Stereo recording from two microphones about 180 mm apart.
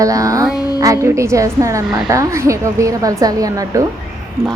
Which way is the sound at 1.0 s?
15° right (ahead or behind).